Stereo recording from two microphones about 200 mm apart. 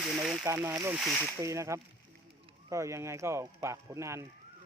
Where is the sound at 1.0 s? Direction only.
Centre (ahead or behind).